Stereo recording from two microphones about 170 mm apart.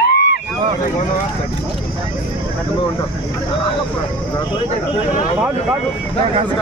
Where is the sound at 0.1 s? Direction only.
70° left (ahead or behind).